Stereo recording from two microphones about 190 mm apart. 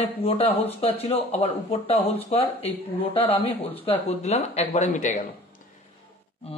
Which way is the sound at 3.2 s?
10° left (ahead or behind).